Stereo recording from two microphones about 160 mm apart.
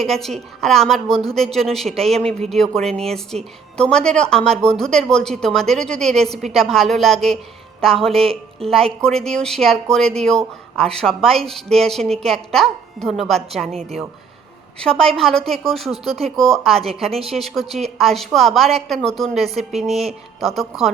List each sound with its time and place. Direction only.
0.0 s speech: centre (ahead or behind)
8.3 s speech: 40° right (ahead or behind)
9.0 s speech: 5° left (ahead or behind)
19.9 s speech: 40° right (ahead or behind)
20.4 s speech: centre (ahead or behind)